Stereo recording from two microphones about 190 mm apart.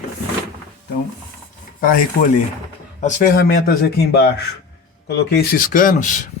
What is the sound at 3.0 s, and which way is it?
A man's voice, 40° left (ahead or behind).